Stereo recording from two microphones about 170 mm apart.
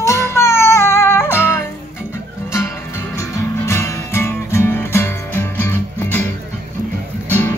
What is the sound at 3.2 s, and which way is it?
Music, 15° left (ahead or behind).